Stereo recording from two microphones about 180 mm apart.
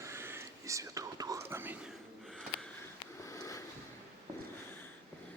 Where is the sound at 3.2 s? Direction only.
15° left (ahead or behind).